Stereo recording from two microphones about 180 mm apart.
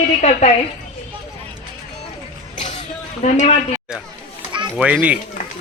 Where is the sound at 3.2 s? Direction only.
40° left (ahead or behind).